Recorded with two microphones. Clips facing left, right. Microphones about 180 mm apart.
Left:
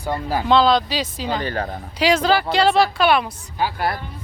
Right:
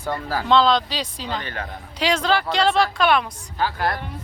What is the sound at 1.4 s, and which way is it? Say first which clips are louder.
Speech: left 7 dB; 35° left (ahead or behind).